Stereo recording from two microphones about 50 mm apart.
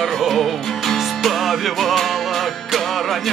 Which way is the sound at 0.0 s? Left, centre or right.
Centre.